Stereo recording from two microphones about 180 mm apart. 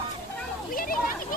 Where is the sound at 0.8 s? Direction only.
50° left (ahead or behind).